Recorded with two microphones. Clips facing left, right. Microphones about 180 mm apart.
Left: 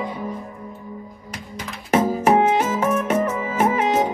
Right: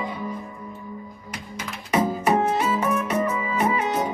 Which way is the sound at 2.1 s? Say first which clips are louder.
Left 5 dB; 80° left.